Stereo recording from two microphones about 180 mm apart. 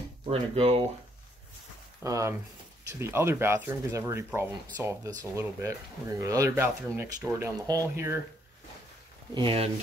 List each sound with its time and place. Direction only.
0.2 s speech: 30° right (ahead or behind)
2.0 s speech: 15° right (ahead or behind)
9.3 s speech: 30° right (ahead or behind)